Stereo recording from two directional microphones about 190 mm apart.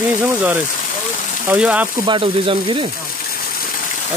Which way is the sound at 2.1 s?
25° right (ahead or behind).